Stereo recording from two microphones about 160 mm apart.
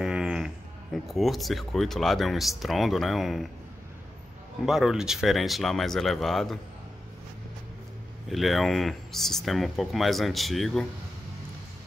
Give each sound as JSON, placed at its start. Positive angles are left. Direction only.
{"t": 0.0, "sound": "a sound", "side_deg": -5}
{"t": 0.9, "sound": "speech", "side_deg": 0}
{"t": 4.6, "sound": "speech", "side_deg": -5}
{"t": 8.3, "sound": "speech", "side_deg": 0}